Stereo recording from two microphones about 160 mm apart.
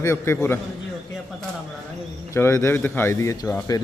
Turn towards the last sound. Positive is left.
turn(degrees=15)  # may be behind; listen again after turning